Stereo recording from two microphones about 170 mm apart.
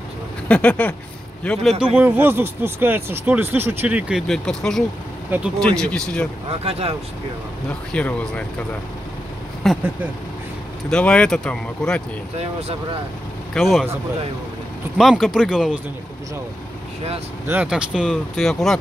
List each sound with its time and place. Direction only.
0.5 s a man's voice: 10° left (ahead or behind)
2.0 s speech: 10° right (ahead or behind)
4.3 s speech: 5° left (ahead or behind)
5.3 s speech: 10° right (ahead or behind)
5.8 s speech: 5° left (ahead or behind)
6.6 s speech: 35° right (ahead or behind)
7.9 s speech: 5° left (ahead or behind)
9.6 s speech: centre (ahead or behind)
10.9 s speech: 5° left (ahead or behind)
13.6 s speech: centre (ahead or behind)
15.0 s speech: centre (ahead or behind)
17.5 s speech: 10° right (ahead or behind)